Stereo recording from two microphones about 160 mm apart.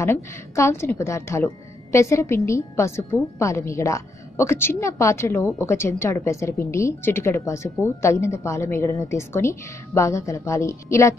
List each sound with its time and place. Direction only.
0.0 s a woman's voice: 15° left (ahead or behind)